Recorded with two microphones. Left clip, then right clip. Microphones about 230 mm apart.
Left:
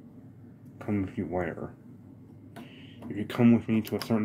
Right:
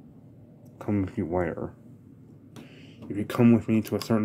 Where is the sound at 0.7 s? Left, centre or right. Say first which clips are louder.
Right 3 dB; right.